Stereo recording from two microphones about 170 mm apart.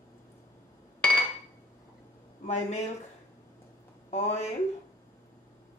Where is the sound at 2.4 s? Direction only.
45° left (ahead or behind).